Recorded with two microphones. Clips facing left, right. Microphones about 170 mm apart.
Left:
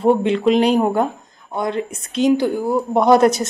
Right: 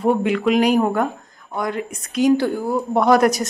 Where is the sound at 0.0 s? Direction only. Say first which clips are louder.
Left 3 dB; 25° left (ahead or behind).